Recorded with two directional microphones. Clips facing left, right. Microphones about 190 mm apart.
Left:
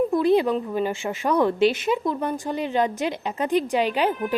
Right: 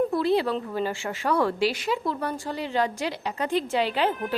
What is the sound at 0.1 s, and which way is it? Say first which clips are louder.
A woman's voice: left 4 dB; 15° left (ahead or behind).